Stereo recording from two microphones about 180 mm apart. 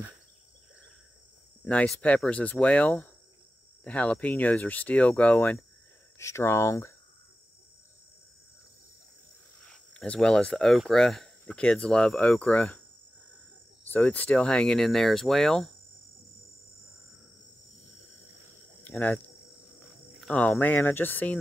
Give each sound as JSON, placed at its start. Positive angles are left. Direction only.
{"t": 1.6, "sound": "speech", "side_deg": 5}
{"t": 9.7, "sound": "speech", "side_deg": 5}
{"t": 13.8, "sound": "speech", "side_deg": 10}
{"t": 18.9, "sound": "speech", "side_deg": 10}